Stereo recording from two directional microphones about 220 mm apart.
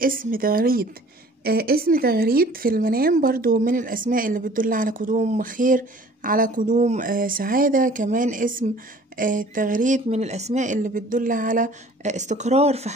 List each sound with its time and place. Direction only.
0.0 s speech: 40° right (ahead or behind)